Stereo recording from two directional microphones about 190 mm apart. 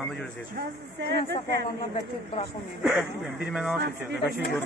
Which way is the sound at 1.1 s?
65° right (ahead or behind).